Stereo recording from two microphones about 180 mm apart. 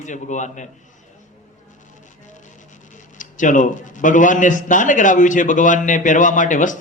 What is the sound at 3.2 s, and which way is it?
A man's voice, 45° left (ahead or behind).